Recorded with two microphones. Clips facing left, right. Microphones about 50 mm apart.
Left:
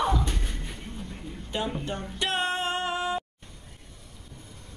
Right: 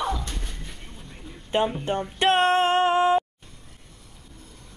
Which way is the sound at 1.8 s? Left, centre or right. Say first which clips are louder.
Right 9 dB; right.